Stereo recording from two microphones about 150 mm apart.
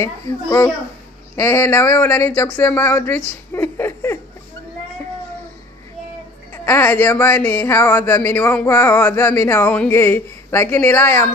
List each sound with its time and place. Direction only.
0.0 s a child's voice: 20° left (ahead or behind)
6.5 s speech: 15° left (ahead or behind)